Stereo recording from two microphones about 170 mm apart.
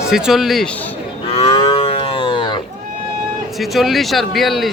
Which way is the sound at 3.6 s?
Centre (ahead or behind).